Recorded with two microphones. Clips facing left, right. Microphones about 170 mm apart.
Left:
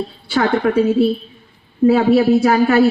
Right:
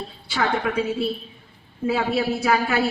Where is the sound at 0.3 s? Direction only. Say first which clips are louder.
Left 7 dB; 50° left (ahead or behind).